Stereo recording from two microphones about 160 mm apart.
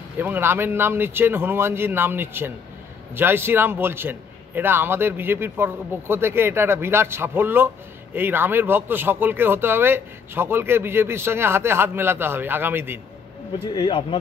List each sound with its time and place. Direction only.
0.2 s a man's voice: 15° right (ahead or behind)
13.7 s speech: 30° left (ahead or behind)